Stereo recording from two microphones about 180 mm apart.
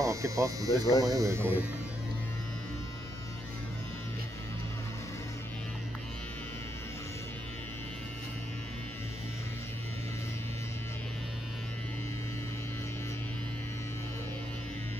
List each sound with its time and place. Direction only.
0.0 s speech: 15° right (ahead or behind)